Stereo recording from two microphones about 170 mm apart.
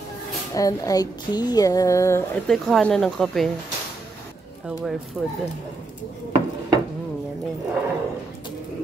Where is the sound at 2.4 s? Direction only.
5° left (ahead or behind).